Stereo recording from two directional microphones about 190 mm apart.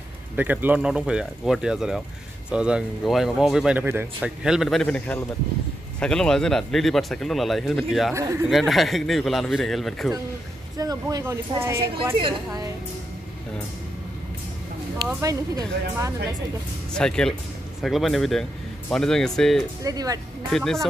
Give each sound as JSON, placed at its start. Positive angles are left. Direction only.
{"t": 0.4, "sound": "speech", "side_deg": -10}
{"t": 8.1, "sound": "speech", "side_deg": -15}
{"t": 8.5, "sound": "speech", "side_deg": 0}
{"t": 10.8, "sound": "speech", "side_deg": -20}
{"t": 12.2, "sound": "speech", "side_deg": -25}
{"t": 15.0, "sound": "speech", "side_deg": -15}
{"t": 16.9, "sound": "speech", "side_deg": 5}
{"t": 19.8, "sound": "speech", "side_deg": -20}
{"t": 20.5, "sound": "speech", "side_deg": 0}